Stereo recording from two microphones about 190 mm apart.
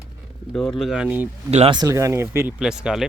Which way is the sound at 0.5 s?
Centre (ahead or behind).